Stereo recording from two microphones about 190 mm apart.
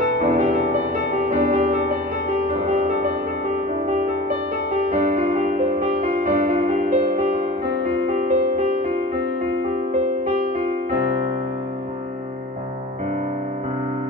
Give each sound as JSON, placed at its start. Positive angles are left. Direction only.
{"t": 0.2, "sound": "music", "side_deg": -45}